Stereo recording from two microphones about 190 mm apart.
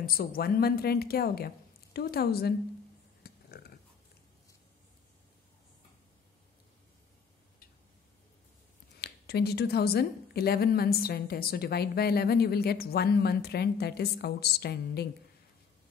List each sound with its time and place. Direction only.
0.0 s a woman's voice: 50° left (ahead or behind)
3.3 s a sound: 55° left (ahead or behind)
9.0 s a woman's voice: 55° left (ahead or behind)